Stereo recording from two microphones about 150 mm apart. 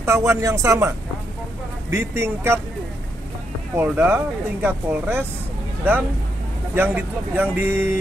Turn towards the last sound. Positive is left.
turn(degrees=-15)  # may be behind; listen again after turning